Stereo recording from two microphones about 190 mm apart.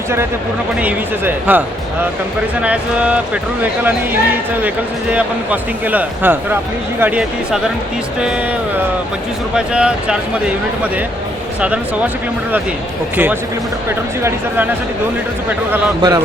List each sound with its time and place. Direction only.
0.8 s speech: 10° right (ahead or behind)
9.6 s speech: 5° right (ahead or behind)
14.3 s speech: 10° right (ahead or behind)
16.0 s a man's voice: 20° right (ahead or behind)